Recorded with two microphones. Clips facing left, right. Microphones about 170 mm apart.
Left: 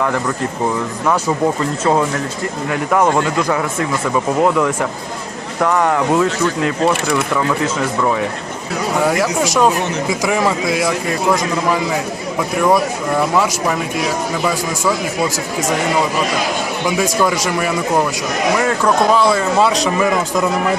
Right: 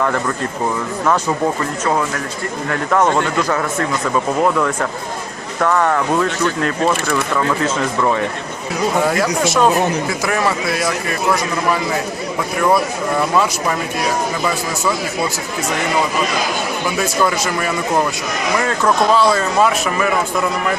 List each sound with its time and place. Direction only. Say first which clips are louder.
1.8 s speech: left 4 dB; 20° left (ahead or behind)
16.8 s speech: left 2 dB; 15° left (ahead or behind)
19.1 s speech: left 1 dB; 15° left (ahead or behind)